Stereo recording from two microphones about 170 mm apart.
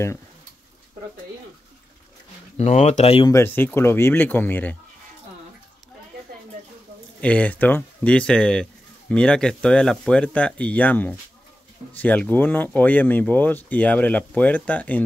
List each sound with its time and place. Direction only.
2.5 s speech: 40° left (ahead or behind)
3.3 s speech: 15° left (ahead or behind)
7.2 s speech: 10° left (ahead or behind)